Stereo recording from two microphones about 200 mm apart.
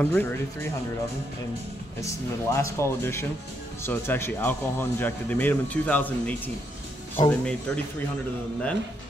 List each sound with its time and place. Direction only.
0.0 s speech: 10° left (ahead or behind)
2.5 s speech: 15° left (ahead or behind)